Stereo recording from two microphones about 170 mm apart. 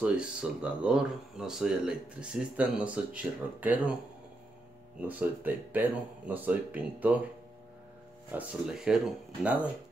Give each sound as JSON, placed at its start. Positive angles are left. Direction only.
{"t": 0.0, "sound": "speech", "side_deg": -5}
{"t": 5.0, "sound": "speech", "side_deg": -10}
{"t": 8.3, "sound": "speech", "side_deg": -5}